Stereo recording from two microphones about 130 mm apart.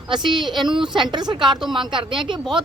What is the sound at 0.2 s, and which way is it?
Speech, 35° right (ahead or behind).